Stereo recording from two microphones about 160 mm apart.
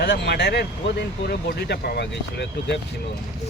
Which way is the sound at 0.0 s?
90° left.